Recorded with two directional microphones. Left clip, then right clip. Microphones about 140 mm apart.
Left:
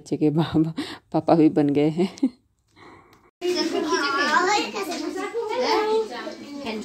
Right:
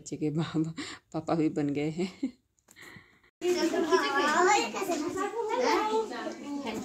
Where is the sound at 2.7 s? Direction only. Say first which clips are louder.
Left 3 dB; 25° left (ahead or behind).